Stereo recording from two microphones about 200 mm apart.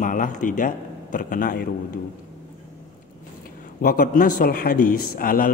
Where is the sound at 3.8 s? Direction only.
50° left (ahead or behind).